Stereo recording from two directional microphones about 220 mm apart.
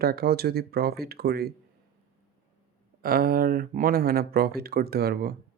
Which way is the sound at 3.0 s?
40° right (ahead or behind).